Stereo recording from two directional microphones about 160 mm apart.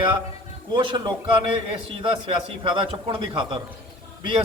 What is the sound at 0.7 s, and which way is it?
A man's voice, 30° right (ahead or behind).